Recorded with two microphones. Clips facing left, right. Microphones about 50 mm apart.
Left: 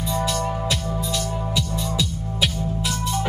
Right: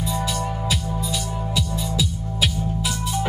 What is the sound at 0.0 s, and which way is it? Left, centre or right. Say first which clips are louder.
Music: left 2 dB; centre.